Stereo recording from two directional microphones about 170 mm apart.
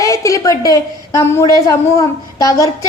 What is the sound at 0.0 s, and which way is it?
A woman's voice, 20° left (ahead or behind).